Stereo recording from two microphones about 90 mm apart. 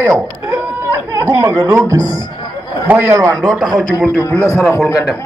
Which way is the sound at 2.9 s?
25° right (ahead or behind).